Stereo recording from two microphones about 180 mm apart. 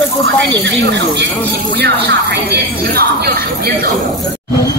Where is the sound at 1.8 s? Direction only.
65° right (ahead or behind).